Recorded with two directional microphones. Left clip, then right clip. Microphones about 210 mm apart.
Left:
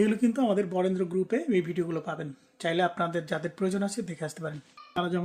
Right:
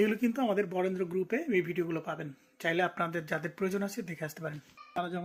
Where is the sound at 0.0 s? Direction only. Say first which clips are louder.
Left 3 dB; 5° left (ahead or behind).